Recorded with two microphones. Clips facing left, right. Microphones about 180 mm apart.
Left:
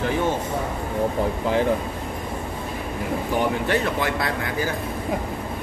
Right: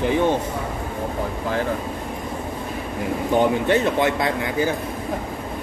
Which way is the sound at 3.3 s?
20° right (ahead or behind).